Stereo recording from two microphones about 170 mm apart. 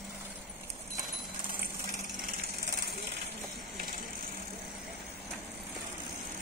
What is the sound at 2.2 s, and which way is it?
Jackhammer, 65° right (ahead or behind).